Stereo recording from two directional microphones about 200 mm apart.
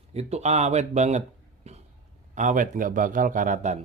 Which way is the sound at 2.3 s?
40° right (ahead or behind).